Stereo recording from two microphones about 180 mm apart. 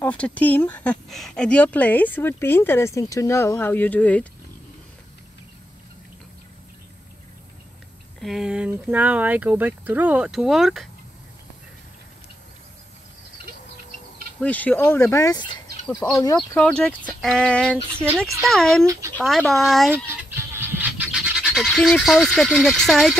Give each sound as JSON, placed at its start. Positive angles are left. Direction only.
{"t": 0.0, "sound": "speech", "side_deg": 10}
{"t": 8.2, "sound": "speech", "side_deg": 0}
{"t": 14.4, "sound": "speech", "side_deg": 10}
{"t": 16.4, "sound": "speech", "side_deg": 5}
{"t": 18.9, "sound": "speech", "side_deg": -15}
{"t": 19.1, "sound": "speech", "side_deg": 5}
{"t": 20.1, "sound": "goose", "side_deg": -15}